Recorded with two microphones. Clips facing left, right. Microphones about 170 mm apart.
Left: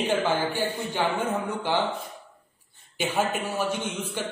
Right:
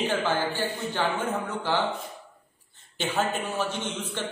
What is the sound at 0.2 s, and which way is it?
Speech, 15° left (ahead or behind).